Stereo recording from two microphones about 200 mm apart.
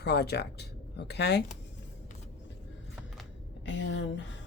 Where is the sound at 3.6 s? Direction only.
65° left (ahead or behind).